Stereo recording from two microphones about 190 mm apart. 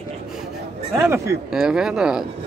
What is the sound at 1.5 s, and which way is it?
Speech, 5° right (ahead or behind).